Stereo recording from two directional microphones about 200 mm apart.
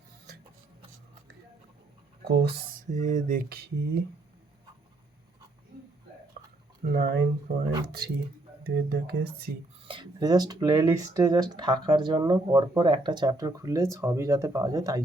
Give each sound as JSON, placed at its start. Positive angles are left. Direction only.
{"t": 2.2, "sound": "speech", "side_deg": -55}
{"t": 2.9, "sound": "speech", "side_deg": -40}
{"t": 5.7, "sound": "a sound", "side_deg": -50}
{"t": 6.8, "sound": "speech", "side_deg": -50}
{"t": 8.6, "sound": "speech", "side_deg": -55}
{"t": 9.8, "sound": "speech", "side_deg": -25}